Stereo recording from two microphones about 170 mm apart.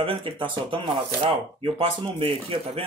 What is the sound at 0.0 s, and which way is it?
Speech, 30° right (ahead or behind).